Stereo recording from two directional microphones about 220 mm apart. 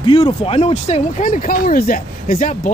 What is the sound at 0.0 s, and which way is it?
Speech, 25° left (ahead or behind).